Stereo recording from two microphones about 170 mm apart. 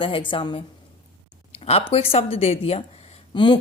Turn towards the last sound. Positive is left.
turn(degrees=25)  # may be behind; listen again after turning